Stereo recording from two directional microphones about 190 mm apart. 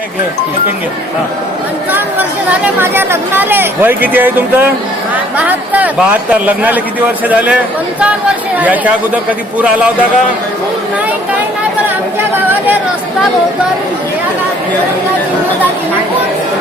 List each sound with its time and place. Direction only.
2.7 s speech: 10° right (ahead or behind)
8.5 s speech: 10° right (ahead or behind)
12.3 s chatter: 10° right (ahead or behind)